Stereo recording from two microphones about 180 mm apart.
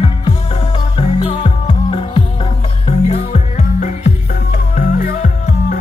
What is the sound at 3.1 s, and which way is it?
Music, 40° left (ahead or behind).